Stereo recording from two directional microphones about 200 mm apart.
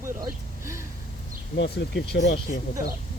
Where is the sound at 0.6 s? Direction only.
15° right (ahead or behind).